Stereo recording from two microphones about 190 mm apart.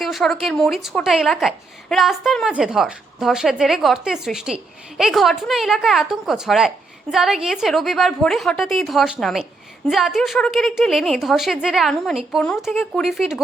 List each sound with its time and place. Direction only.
0.0 s a woman's voice: centre (ahead or behind)